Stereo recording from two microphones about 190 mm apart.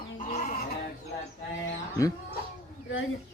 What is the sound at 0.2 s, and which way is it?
Chicken, 45° left (ahead or behind).